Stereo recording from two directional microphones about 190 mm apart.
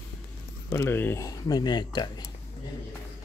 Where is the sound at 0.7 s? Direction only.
15° left (ahead or behind).